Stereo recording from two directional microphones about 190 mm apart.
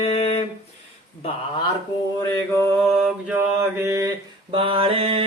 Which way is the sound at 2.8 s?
Centre (ahead or behind).